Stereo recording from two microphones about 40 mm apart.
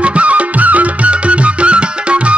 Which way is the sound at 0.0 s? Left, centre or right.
Right.